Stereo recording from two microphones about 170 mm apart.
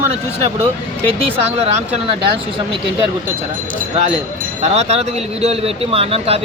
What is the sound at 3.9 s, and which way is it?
Speech, 35° right (ahead or behind).